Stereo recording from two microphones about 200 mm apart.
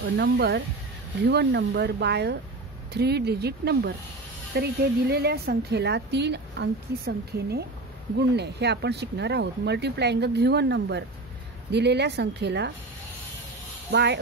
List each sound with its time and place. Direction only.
0.2 s a woman's voice: 55° right (ahead or behind)
13.9 s a woman's voice: 55° right (ahead or behind)